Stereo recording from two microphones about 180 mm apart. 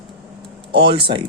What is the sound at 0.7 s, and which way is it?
Speech, 70° right (ahead or behind).